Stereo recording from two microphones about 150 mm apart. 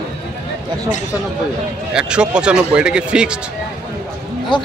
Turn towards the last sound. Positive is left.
turn(degrees=30)  # may be behind; listen again after turning